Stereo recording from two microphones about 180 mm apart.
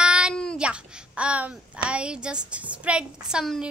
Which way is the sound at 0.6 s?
5° right (ahead or behind).